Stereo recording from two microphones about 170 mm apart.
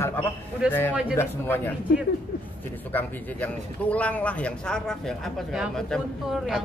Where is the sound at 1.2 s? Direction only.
10° left (ahead or behind).